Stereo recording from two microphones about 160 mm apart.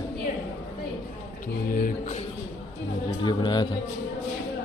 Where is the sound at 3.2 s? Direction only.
25° left (ahead or behind).